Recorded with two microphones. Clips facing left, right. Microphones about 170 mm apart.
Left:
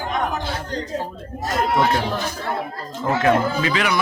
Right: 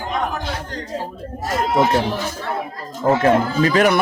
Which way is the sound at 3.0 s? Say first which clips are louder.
Right 3 dB; 40° right (ahead or behind).